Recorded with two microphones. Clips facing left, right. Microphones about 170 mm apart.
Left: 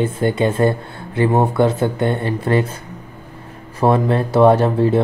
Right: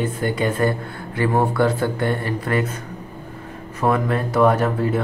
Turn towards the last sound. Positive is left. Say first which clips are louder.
# left 5 dB
turn(degrees=25)  # may be behind; listen again after turning